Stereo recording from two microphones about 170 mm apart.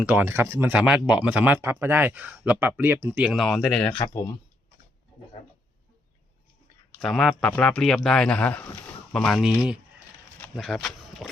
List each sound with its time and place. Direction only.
0.0 s speech: 10° right (ahead or behind)
3.9 s speech: 25° left (ahead or behind)
7.0 s speech: centre (ahead or behind)